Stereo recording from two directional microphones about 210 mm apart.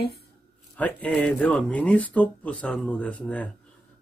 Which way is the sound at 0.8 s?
5° left (ahead or behind).